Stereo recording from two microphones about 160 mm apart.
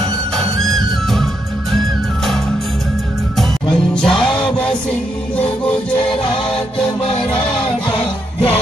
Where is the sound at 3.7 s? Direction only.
5° left (ahead or behind).